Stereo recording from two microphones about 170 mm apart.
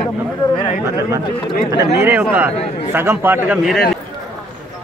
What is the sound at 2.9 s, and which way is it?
Speech, 10° right (ahead or behind).